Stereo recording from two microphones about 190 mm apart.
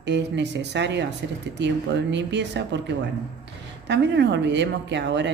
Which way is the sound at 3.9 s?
65° right (ahead or behind).